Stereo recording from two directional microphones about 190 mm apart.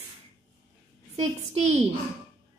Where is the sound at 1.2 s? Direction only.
35° right (ahead or behind).